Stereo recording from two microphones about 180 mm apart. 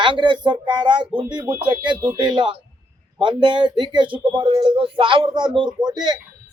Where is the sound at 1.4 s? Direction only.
10° right (ahead or behind).